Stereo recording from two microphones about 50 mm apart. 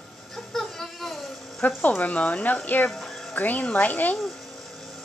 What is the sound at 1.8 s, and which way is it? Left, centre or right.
Speech, left.